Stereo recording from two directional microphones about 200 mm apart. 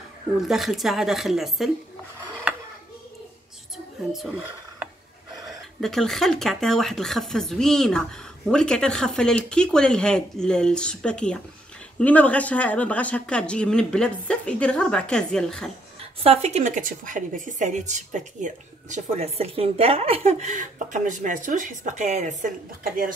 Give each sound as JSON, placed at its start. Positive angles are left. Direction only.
{"t": 0.4, "sound": "speech", "side_deg": 0}
{"t": 3.7, "sound": "a sound", "side_deg": 0}
{"t": 5.8, "sound": "speech", "side_deg": 0}
{"t": 16.2, "sound": "a woman's voice", "side_deg": -30}